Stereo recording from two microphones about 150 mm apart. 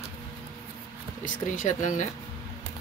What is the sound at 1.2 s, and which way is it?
Speech, 60° left (ahead or behind).